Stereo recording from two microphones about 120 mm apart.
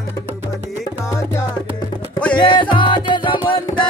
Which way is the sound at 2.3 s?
40° left (ahead or behind).